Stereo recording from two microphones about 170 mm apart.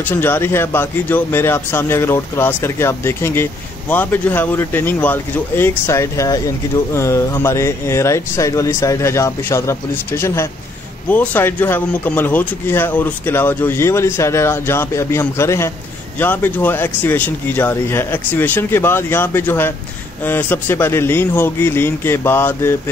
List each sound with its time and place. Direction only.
0.0 s speech: 10° left (ahead or behind)